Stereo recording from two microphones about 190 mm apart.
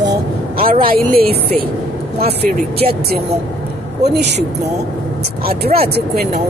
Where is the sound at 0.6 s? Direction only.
50° right (ahead or behind).